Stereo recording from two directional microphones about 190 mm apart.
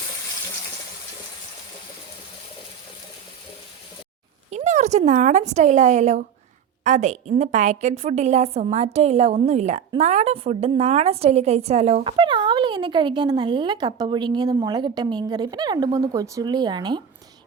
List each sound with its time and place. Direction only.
4.5 s a woman's voice: 40° right (ahead or behind); by 17.0 s 25° right (ahead or behind)